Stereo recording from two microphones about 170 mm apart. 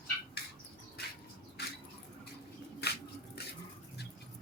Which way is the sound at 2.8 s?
70° left (ahead or behind).